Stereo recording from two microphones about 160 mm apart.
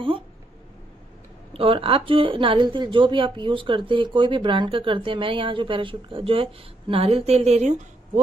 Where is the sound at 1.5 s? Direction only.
35° right (ahead or behind).